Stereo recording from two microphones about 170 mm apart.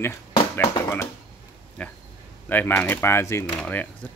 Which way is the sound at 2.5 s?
10° left (ahead or behind).